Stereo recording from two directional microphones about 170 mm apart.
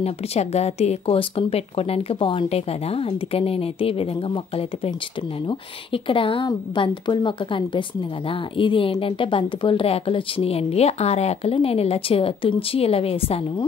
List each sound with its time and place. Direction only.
0.0 s a woman's voice: 40° left (ahead or behind)